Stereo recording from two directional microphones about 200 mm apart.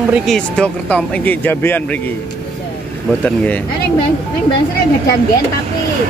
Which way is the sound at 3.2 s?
5° left (ahead or behind).